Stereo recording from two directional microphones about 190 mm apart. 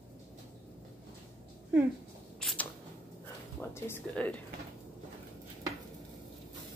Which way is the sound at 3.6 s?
10° left (ahead or behind).